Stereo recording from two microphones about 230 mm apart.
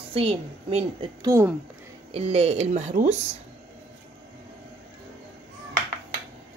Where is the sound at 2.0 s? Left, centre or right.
Right.